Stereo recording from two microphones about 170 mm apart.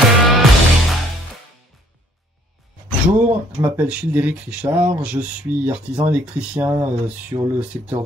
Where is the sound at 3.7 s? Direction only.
10° right (ahead or behind).